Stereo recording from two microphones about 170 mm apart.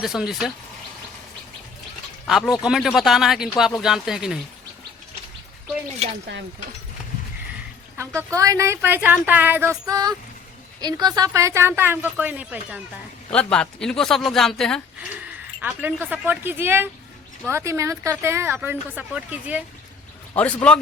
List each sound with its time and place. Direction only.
0.0 s speech: centre (ahead or behind)
2.2 s speech: centre (ahead or behind)
7.9 s speech: 15° right (ahead or behind)
13.3 s speech: 5° left (ahead or behind)
15.6 s speech: 10° right (ahead or behind)
20.3 s speech: 10° left (ahead or behind)